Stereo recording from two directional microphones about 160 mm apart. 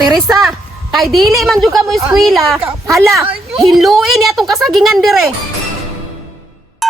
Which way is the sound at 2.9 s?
20° right (ahead or behind).